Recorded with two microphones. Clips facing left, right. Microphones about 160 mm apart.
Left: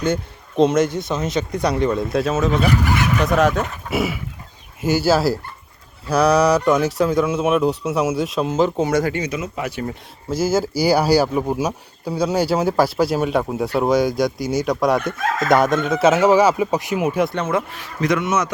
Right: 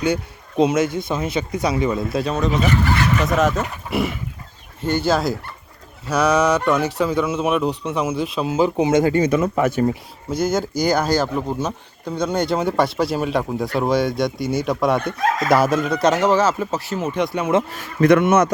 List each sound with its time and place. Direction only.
0.1 s a man's voice: 10° right (ahead or behind)
9.1 s speech: 50° right (ahead or behind)
10.2 s speech: 5° left (ahead or behind)
17.7 s speech: 55° right (ahead or behind)